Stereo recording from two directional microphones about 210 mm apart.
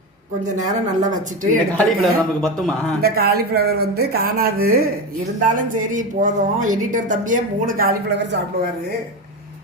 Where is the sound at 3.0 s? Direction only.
45° right (ahead or behind).